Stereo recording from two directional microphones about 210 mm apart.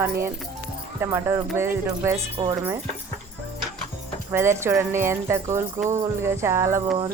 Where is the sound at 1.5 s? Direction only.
10° right (ahead or behind).